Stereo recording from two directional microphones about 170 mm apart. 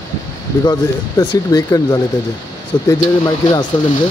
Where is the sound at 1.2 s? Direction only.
20° left (ahead or behind).